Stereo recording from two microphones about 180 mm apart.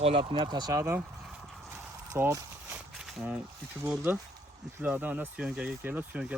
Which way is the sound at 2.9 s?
Centre (ahead or behind).